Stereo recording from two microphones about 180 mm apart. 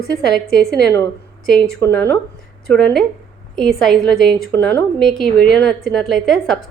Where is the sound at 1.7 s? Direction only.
10° left (ahead or behind).